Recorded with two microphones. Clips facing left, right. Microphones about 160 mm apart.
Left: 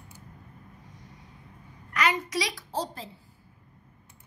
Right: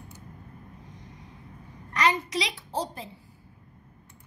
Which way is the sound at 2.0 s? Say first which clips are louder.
Right 2 dB; 25° right (ahead or behind).